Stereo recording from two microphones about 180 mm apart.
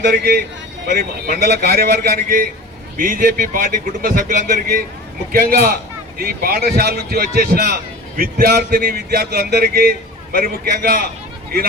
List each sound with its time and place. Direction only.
0.0 s a man's voice: 60° right (ahead or behind)